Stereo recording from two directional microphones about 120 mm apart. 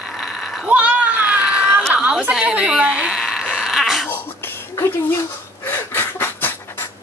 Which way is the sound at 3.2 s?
Centre (ahead or behind).